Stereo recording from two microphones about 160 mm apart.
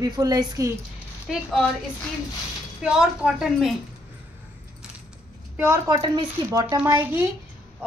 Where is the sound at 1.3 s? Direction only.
Centre (ahead or behind).